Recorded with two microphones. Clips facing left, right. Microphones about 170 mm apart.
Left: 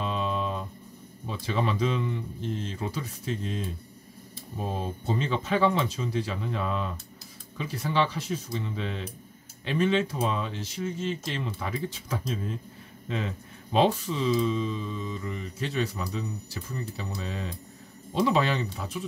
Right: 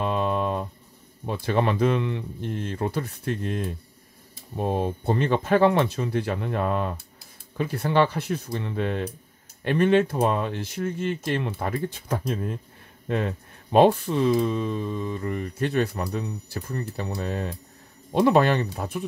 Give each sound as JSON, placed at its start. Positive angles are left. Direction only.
{"t": 0.0, "sound": "music", "side_deg": -55}
{"t": 1.2, "sound": "speech", "side_deg": -60}